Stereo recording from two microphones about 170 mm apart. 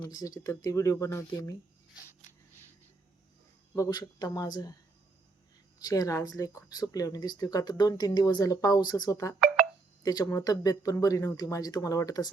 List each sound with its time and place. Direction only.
0.1 s speech: 20° left (ahead or behind)
3.8 s speech: 20° left (ahead or behind)
5.8 s speech: 20° left (ahead or behind)